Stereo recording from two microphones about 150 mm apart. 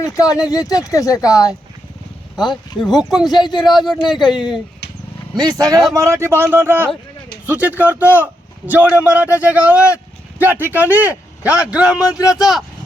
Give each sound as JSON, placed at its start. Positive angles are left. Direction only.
{"t": 0.0, "sound": "speech", "side_deg": 25}
{"t": 2.8, "sound": "speech", "side_deg": 0}
{"t": 3.2, "sound": "speech", "side_deg": 30}
{"t": 5.3, "sound": "a man's voice", "side_deg": -25}